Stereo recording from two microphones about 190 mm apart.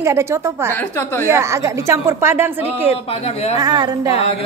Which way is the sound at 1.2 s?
15° right (ahead or behind).